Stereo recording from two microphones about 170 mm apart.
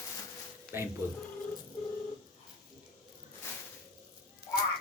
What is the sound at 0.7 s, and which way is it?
Speech, 15° right (ahead or behind).